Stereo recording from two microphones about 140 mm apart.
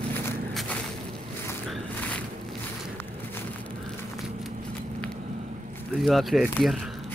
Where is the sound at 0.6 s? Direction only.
5° left (ahead or behind).